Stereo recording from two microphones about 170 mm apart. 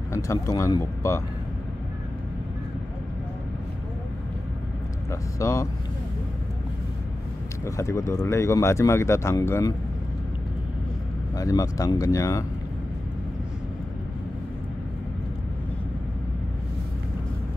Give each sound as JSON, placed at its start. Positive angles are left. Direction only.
{"t": 0.1, "sound": "speech", "side_deg": 20}
{"t": 5.4, "sound": "speech", "side_deg": 20}
{"t": 7.6, "sound": "speech", "side_deg": 15}
{"t": 11.3, "sound": "speech", "side_deg": 20}